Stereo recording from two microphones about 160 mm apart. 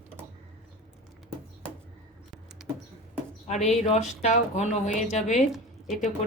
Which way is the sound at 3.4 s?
45° left (ahead or behind).